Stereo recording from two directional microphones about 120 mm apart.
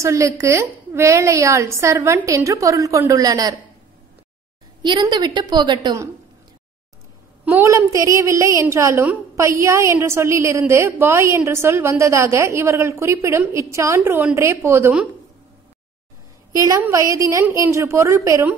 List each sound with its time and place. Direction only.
0.0 s a woman's voice: 25° right (ahead or behind)
4.8 s a woman's voice: 35° right (ahead or behind)
7.5 s a woman's voice: 25° right (ahead or behind)
16.5 s a woman's voice: 30° right (ahead or behind)